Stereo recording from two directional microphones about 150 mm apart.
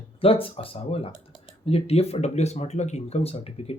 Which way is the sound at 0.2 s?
40° left (ahead or behind).